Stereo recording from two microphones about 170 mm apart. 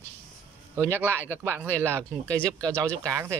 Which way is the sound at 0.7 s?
15° right (ahead or behind).